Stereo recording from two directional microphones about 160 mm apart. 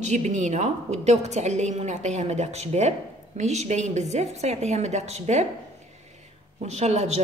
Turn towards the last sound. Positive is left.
turn(degrees=-45)  # may be behind; listen again after turning